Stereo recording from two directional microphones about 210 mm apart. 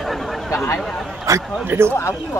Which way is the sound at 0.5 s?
15° left (ahead or behind).